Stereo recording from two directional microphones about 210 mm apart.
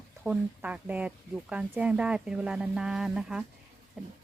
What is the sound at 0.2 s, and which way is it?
Speech, 5° right (ahead or behind).